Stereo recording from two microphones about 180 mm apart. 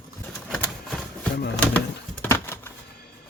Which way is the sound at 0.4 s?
5° left (ahead or behind).